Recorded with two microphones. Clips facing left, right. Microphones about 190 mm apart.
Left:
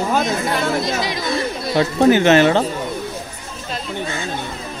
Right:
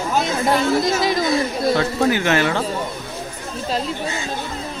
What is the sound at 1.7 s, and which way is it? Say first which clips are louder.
Speech: left 5 dB; 25° left (ahead or behind).